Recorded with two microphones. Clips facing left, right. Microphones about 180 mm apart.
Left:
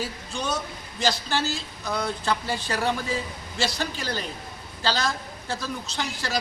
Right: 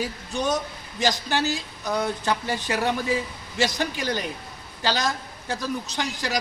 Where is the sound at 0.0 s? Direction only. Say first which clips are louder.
Right 4 dB; 20° right (ahead or behind).